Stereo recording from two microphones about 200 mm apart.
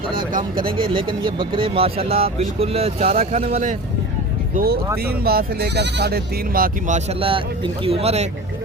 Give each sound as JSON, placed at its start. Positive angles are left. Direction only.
{"t": 0.3, "sound": "speech", "side_deg": -45}
{"t": 0.8, "sound": "speech", "side_deg": -25}
{"t": 4.5, "sound": "speech", "side_deg": -50}